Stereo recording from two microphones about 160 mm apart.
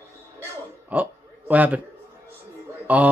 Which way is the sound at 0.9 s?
10° right (ahead or behind).